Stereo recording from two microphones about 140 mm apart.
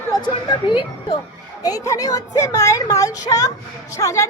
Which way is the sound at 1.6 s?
25° left (ahead or behind).